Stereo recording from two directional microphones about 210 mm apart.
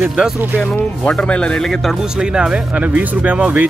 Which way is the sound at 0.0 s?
5° right (ahead or behind).